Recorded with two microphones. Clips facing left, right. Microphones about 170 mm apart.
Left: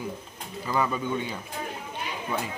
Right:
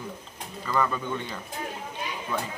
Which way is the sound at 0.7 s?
10° left (ahead or behind).